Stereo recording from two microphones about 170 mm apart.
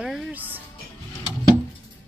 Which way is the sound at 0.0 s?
5° right (ahead or behind).